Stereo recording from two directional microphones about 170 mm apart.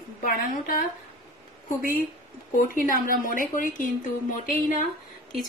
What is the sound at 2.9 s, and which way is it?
A woman's voice, 55° left (ahead or behind).